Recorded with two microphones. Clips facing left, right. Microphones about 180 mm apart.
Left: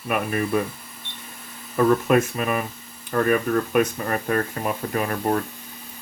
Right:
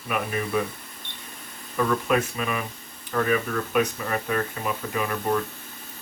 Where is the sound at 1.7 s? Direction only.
50° left (ahead or behind).